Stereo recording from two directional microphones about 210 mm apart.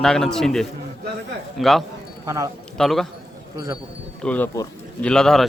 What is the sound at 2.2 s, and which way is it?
Speech, 15° right (ahead or behind).